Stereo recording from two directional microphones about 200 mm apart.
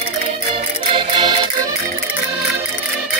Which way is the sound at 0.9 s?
25° right (ahead or behind).